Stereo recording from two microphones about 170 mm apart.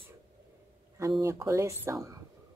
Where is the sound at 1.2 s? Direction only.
20° right (ahead or behind).